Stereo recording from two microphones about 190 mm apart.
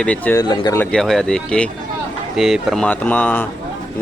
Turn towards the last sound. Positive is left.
turn(degrees=10)  # may be behind; listen again after turning